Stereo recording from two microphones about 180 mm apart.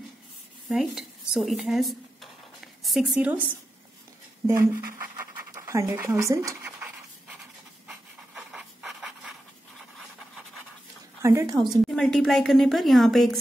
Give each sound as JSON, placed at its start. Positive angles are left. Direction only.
{"t": 0.7, "sound": "dishes", "side_deg": -5}
{"t": 5.5, "sound": "scratch", "side_deg": -15}
{"t": 7.9, "sound": "pant", "side_deg": -5}
{"t": 11.2, "sound": "a woman's voice", "side_deg": -15}
{"t": 11.9, "sound": "a woman's voice", "side_deg": 0}